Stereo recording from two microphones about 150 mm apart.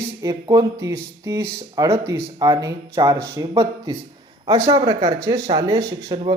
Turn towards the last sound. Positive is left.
turn(degrees=-20)  # may be behind; listen again after turning